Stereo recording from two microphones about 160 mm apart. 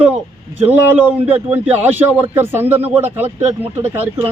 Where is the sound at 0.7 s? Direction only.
10° right (ahead or behind).